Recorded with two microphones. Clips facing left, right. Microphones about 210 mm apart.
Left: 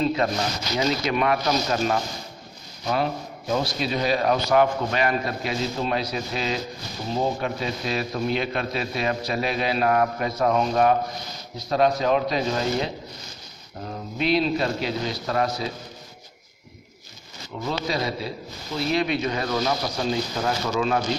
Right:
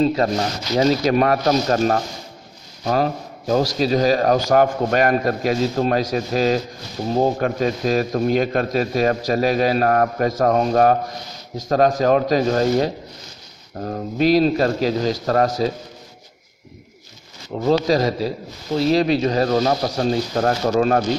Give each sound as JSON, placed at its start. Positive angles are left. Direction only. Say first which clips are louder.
{"t": 0.0, "sound": "a man's voice", "louder": "right 5 dB", "side_deg": -40}
{"t": 12.0, "sound": "speech", "louder": "right 6 dB", "side_deg": -45}
{"t": 17.5, "sound": "a man's voice", "louder": "right 10 dB", "side_deg": -40}